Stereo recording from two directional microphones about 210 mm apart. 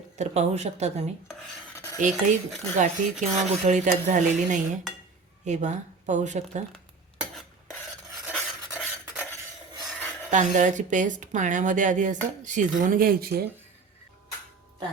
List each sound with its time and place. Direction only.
0.2 s speech: 30° right (ahead or behind)
1.3 s filing: 5° left (ahead or behind)
2.7 s speech: 35° right (ahead or behind)
7.3 s a sound: centre (ahead or behind)
9.8 s filing: 10° left (ahead or behind)
10.3 s speech: 35° right (ahead or behind)